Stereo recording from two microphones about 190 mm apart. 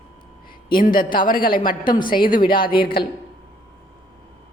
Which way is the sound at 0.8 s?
45° left (ahead or behind).